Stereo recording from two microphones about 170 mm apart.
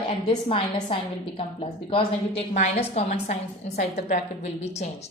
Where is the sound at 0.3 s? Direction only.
35° left (ahead or behind).